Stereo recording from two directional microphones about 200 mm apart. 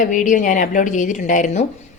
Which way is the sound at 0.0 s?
40° left (ahead or behind).